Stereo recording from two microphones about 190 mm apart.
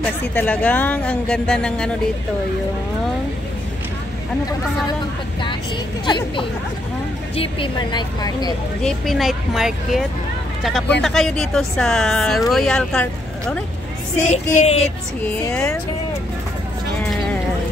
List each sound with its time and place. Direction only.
0.0 s speech: 10° left (ahead or behind)
6.0 s speech: 25° left (ahead or behind)
8.8 s speech: centre (ahead or behind)
14.2 s music: 40° left (ahead or behind)
15.2 s speech: 5° left (ahead or behind)